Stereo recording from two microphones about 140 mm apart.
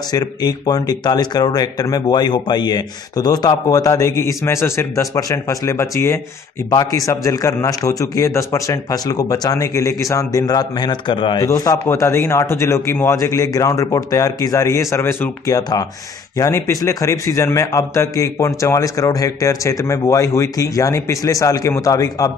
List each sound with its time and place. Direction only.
0.1 s a man's voice: 30° left (ahead or behind)
15.5 s a man's voice: 25° left (ahead or behind)